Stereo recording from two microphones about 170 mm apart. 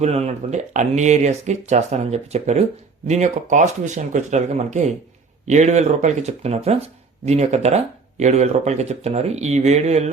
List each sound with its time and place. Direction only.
0.0 s speech: 40° right (ahead or behind)